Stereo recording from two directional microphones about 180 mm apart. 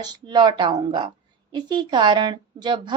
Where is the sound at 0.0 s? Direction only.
25° right (ahead or behind).